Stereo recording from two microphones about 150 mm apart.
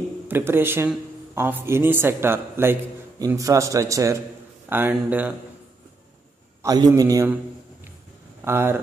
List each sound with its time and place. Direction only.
0.3 s speech: 15° right (ahead or behind)
6.6 s a man's voice: 25° right (ahead or behind)
8.5 s speech: 15° right (ahead or behind)